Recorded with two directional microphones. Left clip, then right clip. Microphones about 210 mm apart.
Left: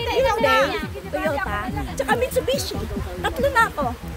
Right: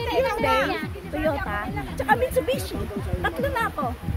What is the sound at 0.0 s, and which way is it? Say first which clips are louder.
Music: left 4 dB; 35° left (ahead or behind).